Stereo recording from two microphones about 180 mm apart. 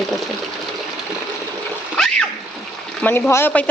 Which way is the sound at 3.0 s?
10° left (ahead or behind).